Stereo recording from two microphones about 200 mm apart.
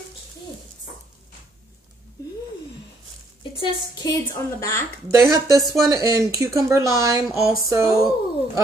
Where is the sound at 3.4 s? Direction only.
20° left (ahead or behind).